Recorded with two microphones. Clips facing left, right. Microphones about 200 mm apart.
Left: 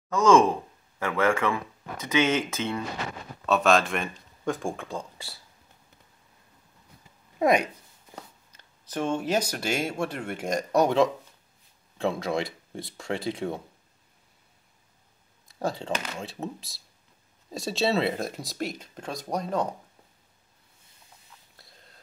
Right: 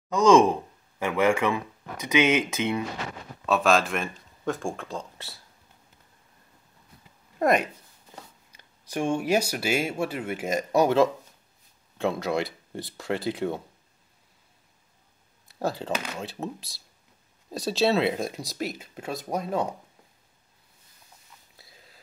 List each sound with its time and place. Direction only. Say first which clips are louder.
0.1 s speech: right 2 dB; 15° right (ahead or behind)
3.4 s speech: even; centre (ahead or behind)
7.3 s speech: even; centre (ahead or behind)
8.5 s speech: right 1 dB; 10° right (ahead or behind)
15.4 s speech: right 1 dB; 5° right (ahead or behind)
21.5 s a sound: right 1 dB; 5° right (ahead or behind)